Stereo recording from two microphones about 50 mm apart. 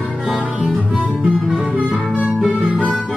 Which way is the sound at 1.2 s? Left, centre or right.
Right.